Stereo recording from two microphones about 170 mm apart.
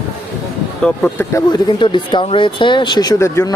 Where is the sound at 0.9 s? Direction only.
10° left (ahead or behind).